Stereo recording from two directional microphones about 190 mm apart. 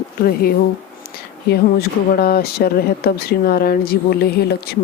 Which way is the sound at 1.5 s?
55° left (ahead or behind).